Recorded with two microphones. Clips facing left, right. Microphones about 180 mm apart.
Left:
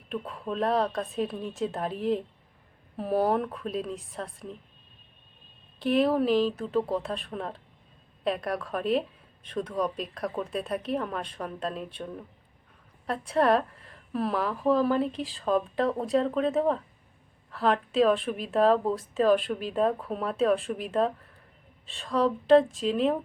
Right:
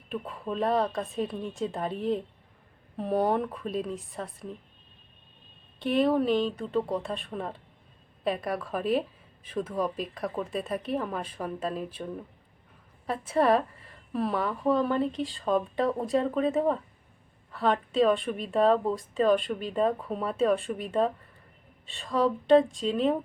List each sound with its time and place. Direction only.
0.1 s speech: centre (ahead or behind)
5.8 s speech: centre (ahead or behind)